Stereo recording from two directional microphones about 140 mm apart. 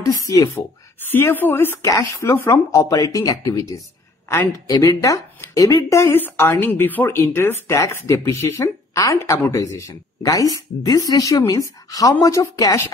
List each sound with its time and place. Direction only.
0.0 s speech: 25° left (ahead or behind)